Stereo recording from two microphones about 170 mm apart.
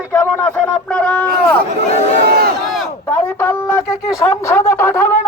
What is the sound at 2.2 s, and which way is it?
Crowd, 70° right (ahead or behind).